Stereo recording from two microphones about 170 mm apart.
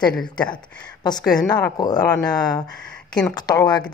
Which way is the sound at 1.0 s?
25° left (ahead or behind).